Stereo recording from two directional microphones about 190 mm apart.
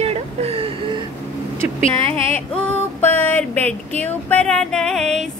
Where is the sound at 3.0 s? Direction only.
10° left (ahead or behind).